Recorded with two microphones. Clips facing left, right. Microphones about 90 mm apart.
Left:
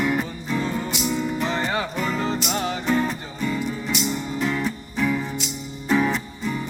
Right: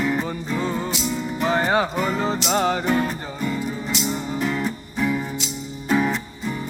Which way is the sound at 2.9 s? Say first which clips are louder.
Even; 10° right (ahead or behind).